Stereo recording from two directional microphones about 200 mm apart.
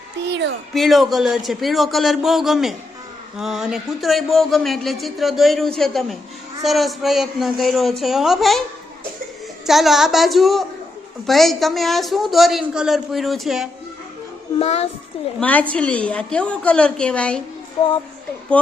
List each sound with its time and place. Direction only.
0.3 s a sound: 60° right (ahead or behind)
0.7 s speech: centre (ahead or behind)
9.6 s speech: centre (ahead or behind)
14.6 s child singing: 30° left (ahead or behind)
15.4 s a woman's voice: 5° left (ahead or behind)
18.6 s speech: 5° left (ahead or behind)